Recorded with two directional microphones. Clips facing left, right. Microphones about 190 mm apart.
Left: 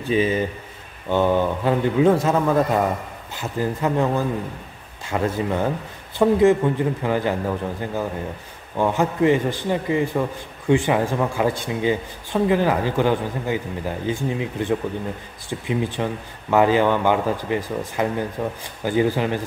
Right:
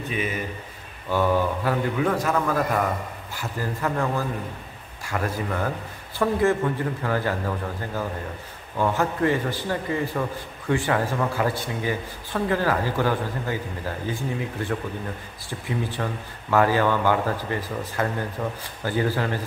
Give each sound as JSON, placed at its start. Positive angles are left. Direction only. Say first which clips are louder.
{"t": 0.0, "sound": "a man's voice", "louder": "left 8 dB", "side_deg": 30}